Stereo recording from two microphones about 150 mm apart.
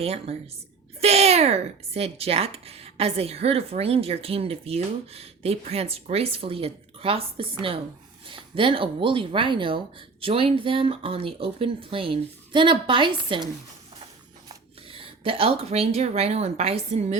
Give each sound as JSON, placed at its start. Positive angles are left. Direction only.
{"t": 0.0, "sound": "speech", "side_deg": -40}
{"t": 14.9, "sound": "speech", "side_deg": -40}